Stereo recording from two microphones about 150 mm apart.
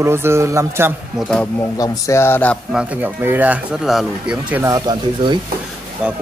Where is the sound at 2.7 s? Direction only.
10° right (ahead or behind).